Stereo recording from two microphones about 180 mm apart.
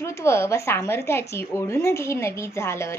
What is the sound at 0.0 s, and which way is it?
Speech, 15° left (ahead or behind).